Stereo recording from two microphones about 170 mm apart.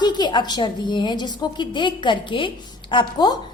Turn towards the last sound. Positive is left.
turn(degrees=25)  # may be behind; listen again after turning